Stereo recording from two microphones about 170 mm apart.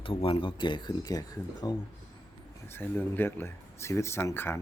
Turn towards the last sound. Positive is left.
turn(degrees=15)  # may be behind; listen again after turning